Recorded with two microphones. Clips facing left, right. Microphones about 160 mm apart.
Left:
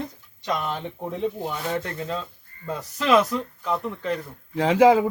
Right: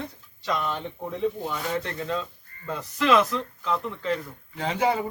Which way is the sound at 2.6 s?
10° left (ahead or behind).